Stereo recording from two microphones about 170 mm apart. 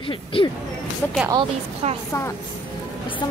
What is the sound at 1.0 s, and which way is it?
Speech, 10° left (ahead or behind).